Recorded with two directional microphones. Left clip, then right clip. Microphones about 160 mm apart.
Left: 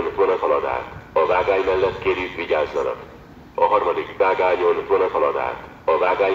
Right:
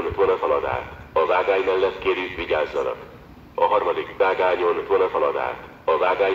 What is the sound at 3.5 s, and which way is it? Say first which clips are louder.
Speech: left 2 dB; 15° right (ahead or behind).